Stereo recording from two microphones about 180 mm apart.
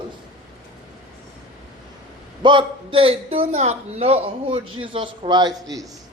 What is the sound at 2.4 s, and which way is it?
A man's voice, 25° right (ahead or behind).